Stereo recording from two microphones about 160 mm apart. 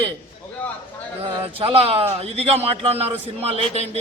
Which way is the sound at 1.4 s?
35° right (ahead or behind).